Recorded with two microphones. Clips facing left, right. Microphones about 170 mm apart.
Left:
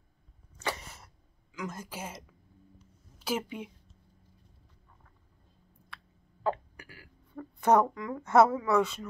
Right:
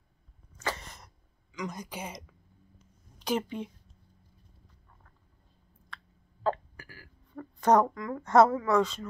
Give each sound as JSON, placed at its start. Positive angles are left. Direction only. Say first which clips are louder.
{"t": 0.7, "sound": "a sound", "louder": "even", "side_deg": 10}
{"t": 3.2, "sound": "speech", "louder": "right 3 dB", "side_deg": 5}
{"t": 6.4, "sound": "hiccup", "louder": "right 1 dB", "side_deg": 15}
{"t": 7.3, "sound": "speech", "louder": "right 1 dB", "side_deg": 5}